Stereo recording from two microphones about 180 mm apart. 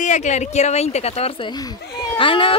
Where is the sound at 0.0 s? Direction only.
40° left (ahead or behind).